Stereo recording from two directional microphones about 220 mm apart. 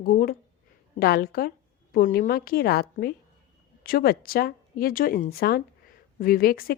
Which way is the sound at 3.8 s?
40° left (ahead or behind).